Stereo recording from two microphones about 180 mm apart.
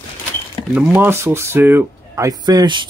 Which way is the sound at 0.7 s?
10° right (ahead or behind).